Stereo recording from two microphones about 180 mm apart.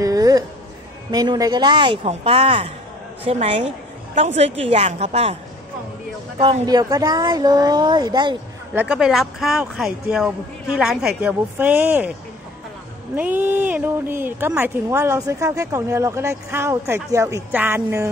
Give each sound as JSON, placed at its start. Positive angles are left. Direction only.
{"t": 0.0, "sound": "music", "side_deg": -20}
{"t": 1.1, "sound": "a woman's voice", "side_deg": -20}
{"t": 6.6, "sound": "speech", "side_deg": -20}
{"t": 8.7, "sound": "speech", "side_deg": -5}
{"t": 13.1, "sound": "a woman's voice", "side_deg": -10}